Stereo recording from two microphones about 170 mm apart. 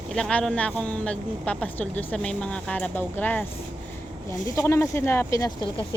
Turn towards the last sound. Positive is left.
turn(degrees=20)  # may be behind; listen again after turning